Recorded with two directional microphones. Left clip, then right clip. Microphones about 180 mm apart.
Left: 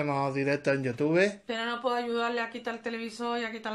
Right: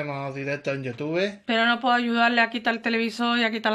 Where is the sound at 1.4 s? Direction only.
50° right (ahead or behind).